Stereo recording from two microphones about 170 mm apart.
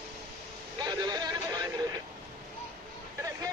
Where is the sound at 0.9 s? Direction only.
25° right (ahead or behind).